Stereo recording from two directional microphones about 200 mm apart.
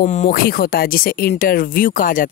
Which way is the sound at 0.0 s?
35° left (ahead or behind).